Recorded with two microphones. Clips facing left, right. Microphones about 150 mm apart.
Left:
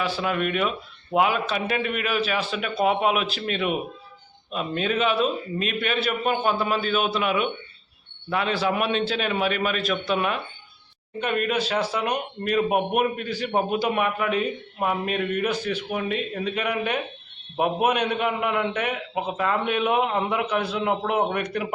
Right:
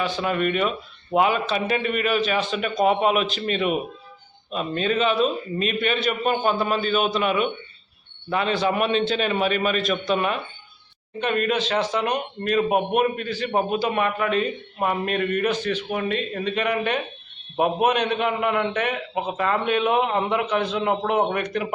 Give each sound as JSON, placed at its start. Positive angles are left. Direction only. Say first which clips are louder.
{"t": 0.0, "sound": "a man's voice", "louder": "right 2 dB", "side_deg": 5}